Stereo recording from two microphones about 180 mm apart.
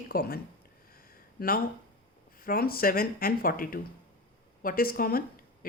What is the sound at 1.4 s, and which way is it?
A woman's voice, 55° left (ahead or behind).